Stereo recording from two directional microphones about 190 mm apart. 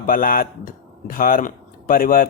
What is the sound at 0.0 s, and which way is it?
Speech, 45° left (ahead or behind).